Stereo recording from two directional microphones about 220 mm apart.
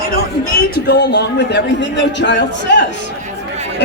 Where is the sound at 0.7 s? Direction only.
50° left (ahead or behind).